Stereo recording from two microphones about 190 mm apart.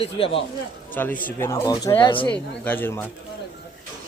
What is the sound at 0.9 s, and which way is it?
Speech, 10° left (ahead or behind).